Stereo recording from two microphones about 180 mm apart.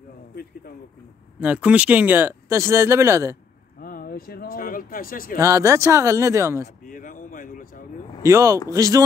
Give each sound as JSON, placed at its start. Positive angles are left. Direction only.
{"t": 1.4, "sound": "speech", "side_deg": -5}
{"t": 3.8, "sound": "speech", "side_deg": 55}
{"t": 5.4, "sound": "speech", "side_deg": -15}
{"t": 6.9, "sound": "a sound", "side_deg": 45}
{"t": 8.2, "sound": "a man's voice", "side_deg": -15}